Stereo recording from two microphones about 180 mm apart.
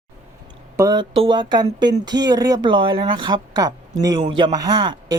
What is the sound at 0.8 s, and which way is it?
Speech, 20° right (ahead or behind).